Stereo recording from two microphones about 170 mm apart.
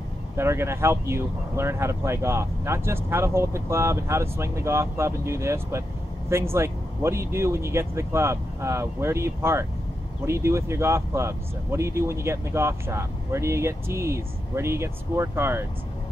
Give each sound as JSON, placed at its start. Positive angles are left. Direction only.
{"t": 0.4, "sound": "speech", "side_deg": -15}